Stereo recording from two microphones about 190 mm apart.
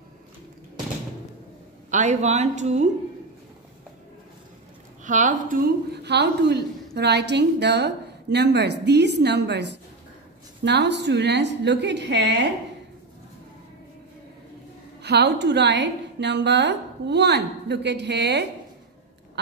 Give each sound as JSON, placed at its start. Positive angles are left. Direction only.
{"t": 1.9, "sound": "a woman's voice", "side_deg": -40}
{"t": 5.0, "sound": "speech", "side_deg": -40}
{"t": 6.0, "sound": "a woman's voice", "side_deg": -65}
{"t": 15.0, "sound": "a woman's voice", "side_deg": -60}